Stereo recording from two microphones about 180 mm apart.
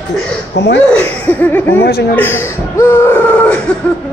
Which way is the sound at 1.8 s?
60° left (ahead or behind).